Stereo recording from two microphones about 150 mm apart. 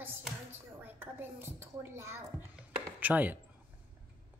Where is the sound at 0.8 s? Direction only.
15° right (ahead or behind).